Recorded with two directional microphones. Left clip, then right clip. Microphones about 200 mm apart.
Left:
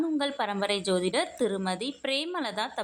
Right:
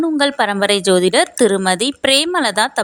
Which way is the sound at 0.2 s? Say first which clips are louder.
Right 14 dB; 45° right (ahead or behind).